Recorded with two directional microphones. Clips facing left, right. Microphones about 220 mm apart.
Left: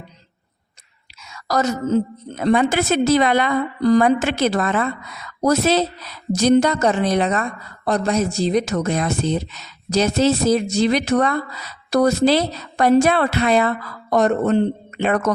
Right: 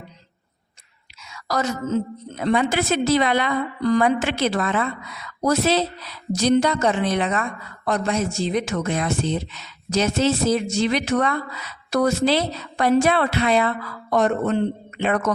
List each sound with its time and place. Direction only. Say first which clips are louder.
1.3 s a woman's voice: left 4 dB; 40° left (ahead or behind)